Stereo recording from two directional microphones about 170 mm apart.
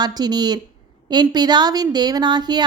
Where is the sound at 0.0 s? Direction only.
25° right (ahead or behind).